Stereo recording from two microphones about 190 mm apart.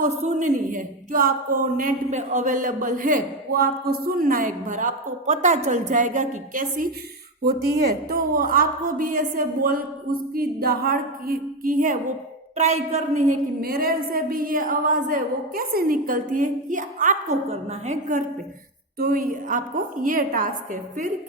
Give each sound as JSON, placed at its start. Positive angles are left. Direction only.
{"t": 0.0, "sound": "speech", "side_deg": -40}
{"t": 8.1, "sound": "a woman's voice", "side_deg": -50}
{"t": 18.9, "sound": "speech", "side_deg": -50}